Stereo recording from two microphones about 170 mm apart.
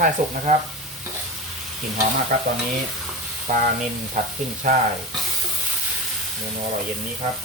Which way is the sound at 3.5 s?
55° right (ahead or behind).